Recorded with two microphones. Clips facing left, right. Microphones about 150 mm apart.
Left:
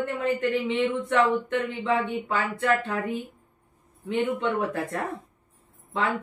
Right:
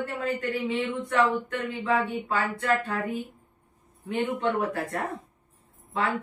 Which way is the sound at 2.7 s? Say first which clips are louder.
Even; 25° left (ahead or behind).